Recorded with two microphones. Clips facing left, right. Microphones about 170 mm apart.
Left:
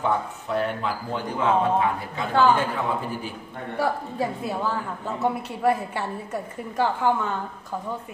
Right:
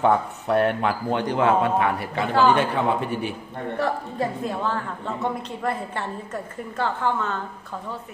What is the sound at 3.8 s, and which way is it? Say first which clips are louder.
A woman's voice: even; 5° left (ahead or behind).